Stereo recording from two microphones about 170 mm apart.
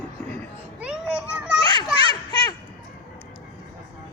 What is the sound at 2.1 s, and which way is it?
Children playing, 25° left (ahead or behind).